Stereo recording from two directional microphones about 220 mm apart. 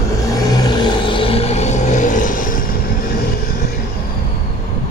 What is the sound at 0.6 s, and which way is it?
Vehicle, 20° left (ahead or behind).